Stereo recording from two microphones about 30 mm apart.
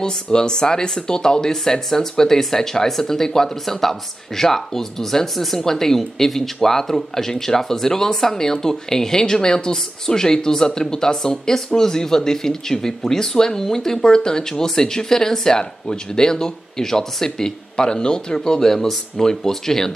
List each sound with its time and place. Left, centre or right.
0.0 s speech: left
18.6 s speech: centre